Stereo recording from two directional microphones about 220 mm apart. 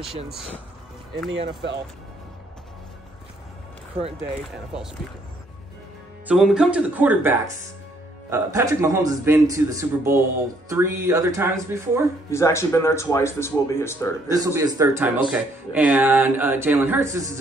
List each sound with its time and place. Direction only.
1.3 s speech: 55° right (ahead or behind)
6.2 s speech: 5° right (ahead or behind)
12.3 s speech: 10° left (ahead or behind)
14.3 s speech: 15° right (ahead or behind)